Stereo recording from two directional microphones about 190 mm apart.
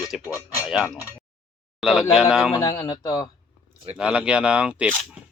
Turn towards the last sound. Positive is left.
turn(degrees=-5)  # may be behind; listen again after turning